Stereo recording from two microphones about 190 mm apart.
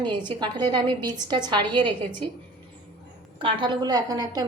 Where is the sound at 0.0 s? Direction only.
25° right (ahead or behind).